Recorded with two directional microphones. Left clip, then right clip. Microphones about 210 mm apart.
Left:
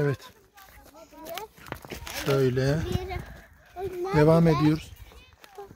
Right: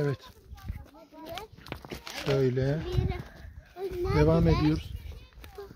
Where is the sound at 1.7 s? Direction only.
5° left (ahead or behind).